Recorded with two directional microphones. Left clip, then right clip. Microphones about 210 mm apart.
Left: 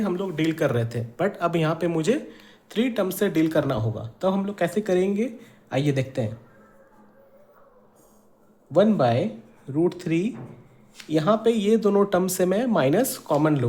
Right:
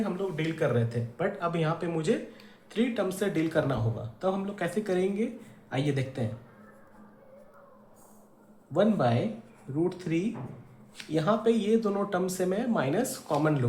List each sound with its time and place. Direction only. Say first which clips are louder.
0.0 s speech: left 6 dB; 55° left (ahead or behind)
8.7 s speech: left 6 dB; 45° left (ahead or behind)